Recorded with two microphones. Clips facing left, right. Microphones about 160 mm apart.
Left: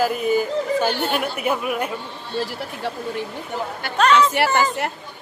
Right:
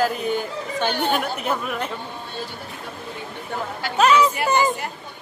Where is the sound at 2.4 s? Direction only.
90° left.